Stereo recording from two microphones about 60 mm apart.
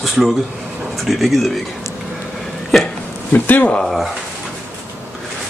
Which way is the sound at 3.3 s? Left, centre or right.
Left.